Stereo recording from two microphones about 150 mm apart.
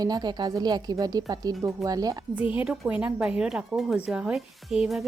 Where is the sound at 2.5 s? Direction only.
5° right (ahead or behind).